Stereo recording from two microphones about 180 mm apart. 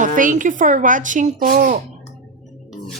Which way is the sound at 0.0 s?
45° right (ahead or behind).